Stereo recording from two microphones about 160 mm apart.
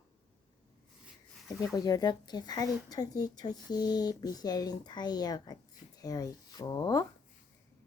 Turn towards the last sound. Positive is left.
turn(degrees=25)  # may be behind; listen again after turning